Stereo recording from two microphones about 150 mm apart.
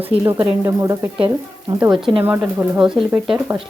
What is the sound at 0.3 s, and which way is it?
Speech, 15° right (ahead or behind).